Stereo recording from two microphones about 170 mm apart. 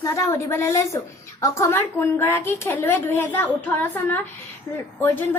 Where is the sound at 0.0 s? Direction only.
20° left (ahead or behind).